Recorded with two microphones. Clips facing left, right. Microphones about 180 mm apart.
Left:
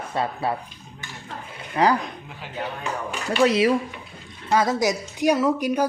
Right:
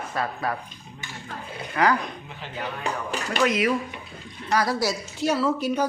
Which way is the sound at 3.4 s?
30° left (ahead or behind).